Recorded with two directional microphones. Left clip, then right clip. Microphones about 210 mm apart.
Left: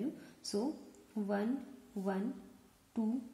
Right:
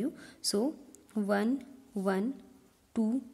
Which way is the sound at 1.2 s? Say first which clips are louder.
Right 6 dB; 55° right (ahead or behind).